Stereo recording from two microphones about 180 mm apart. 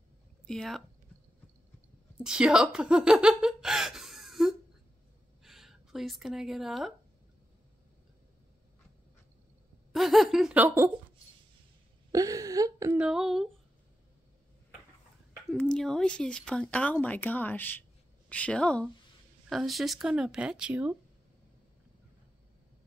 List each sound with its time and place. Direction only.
0.5 s speech: centre (ahead or behind)
2.1 s speech: 5° right (ahead or behind)
9.9 s speech: centre (ahead or behind)
12.1 s a woman's voice: 20° right (ahead or behind)
13.0 s speech: 5° right (ahead or behind)
15.5 s speech: 5° left (ahead or behind)